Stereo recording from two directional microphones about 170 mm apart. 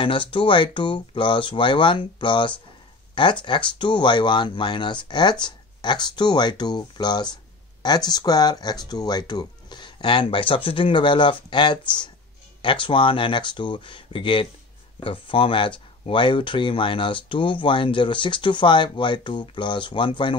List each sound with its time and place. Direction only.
0.0 s speech: 30° left (ahead or behind)